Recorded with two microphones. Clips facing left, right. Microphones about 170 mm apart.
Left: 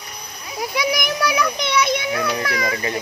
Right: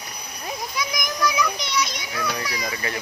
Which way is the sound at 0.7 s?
70° left (ahead or behind).